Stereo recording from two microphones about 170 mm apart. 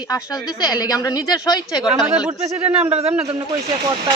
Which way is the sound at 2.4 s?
40° right (ahead or behind).